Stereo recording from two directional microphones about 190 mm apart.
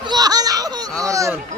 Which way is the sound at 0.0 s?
20° right (ahead or behind).